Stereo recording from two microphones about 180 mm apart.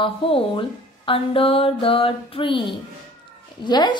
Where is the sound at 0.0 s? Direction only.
30° left (ahead or behind).